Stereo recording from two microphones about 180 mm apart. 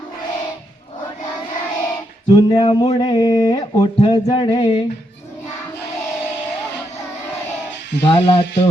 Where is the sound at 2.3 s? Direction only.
25° left (ahead or behind).